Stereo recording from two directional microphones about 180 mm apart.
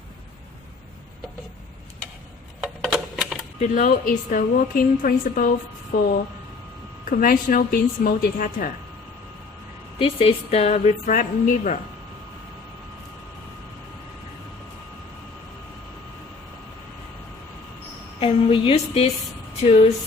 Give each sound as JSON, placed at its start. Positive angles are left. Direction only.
{"t": 2.6, "sound": "a sound", "side_deg": -5}
{"t": 3.6, "sound": "a woman's voice", "side_deg": 45}
{"t": 7.0, "sound": "a woman's voice", "side_deg": 50}
{"t": 10.0, "sound": "a woman's voice", "side_deg": 30}
{"t": 18.2, "sound": "a woman's voice", "side_deg": 30}